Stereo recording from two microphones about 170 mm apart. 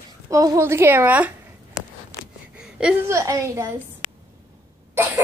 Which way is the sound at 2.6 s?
5° right (ahead or behind).